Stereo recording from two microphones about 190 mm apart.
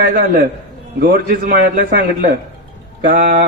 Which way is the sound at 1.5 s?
45° right (ahead or behind).